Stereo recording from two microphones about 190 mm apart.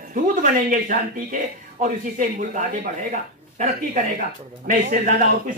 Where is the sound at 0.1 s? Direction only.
45° right (ahead or behind).